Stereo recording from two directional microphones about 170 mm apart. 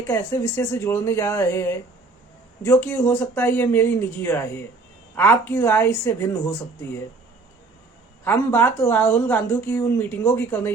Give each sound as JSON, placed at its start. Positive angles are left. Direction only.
{"t": 0.1, "sound": "a woman's voice", "side_deg": 20}
{"t": 8.2, "sound": "a woman's voice", "side_deg": 10}